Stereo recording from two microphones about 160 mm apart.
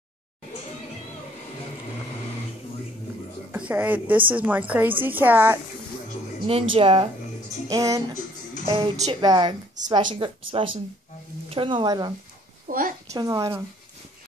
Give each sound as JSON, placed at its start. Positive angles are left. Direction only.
{"t": 3.5, "sound": "a woman's voice", "side_deg": -10}
{"t": 6.4, "sound": "speech", "side_deg": -35}
{"t": 7.7, "sound": "speech", "side_deg": -20}
{"t": 8.6, "sound": "speech", "side_deg": -35}
{"t": 12.6, "sound": "a woman's voice", "side_deg": -60}
{"t": 13.1, "sound": "speech", "side_deg": -20}